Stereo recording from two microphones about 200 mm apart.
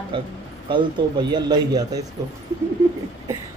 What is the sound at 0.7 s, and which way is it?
A man's voice, 20° right (ahead or behind).